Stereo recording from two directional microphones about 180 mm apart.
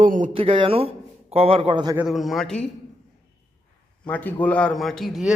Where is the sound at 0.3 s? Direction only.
30° right (ahead or behind).